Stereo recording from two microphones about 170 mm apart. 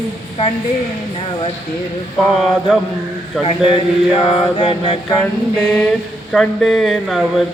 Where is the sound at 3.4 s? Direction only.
35° left (ahead or behind).